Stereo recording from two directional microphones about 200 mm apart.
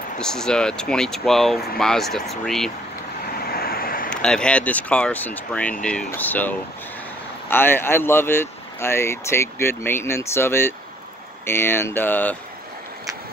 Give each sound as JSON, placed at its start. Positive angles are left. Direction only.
{"t": 0.2, "sound": "speech", "side_deg": 5}
{"t": 3.3, "sound": "vehicle", "side_deg": 50}
{"t": 4.1, "sound": "speech", "side_deg": 5}